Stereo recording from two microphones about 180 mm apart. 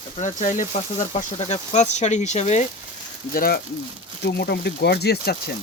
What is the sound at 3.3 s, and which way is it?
Speech, 55° left (ahead or behind).